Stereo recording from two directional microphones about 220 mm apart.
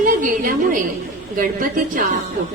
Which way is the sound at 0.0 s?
40° right (ahead or behind).